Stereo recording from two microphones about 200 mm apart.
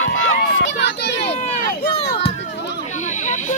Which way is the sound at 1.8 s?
55° left (ahead or behind).